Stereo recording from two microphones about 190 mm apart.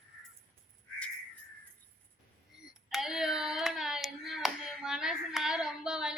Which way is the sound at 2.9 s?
Centre (ahead or behind).